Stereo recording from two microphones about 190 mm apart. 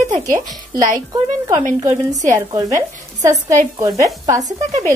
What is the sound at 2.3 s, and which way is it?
A woman's voice, 15° right (ahead or behind).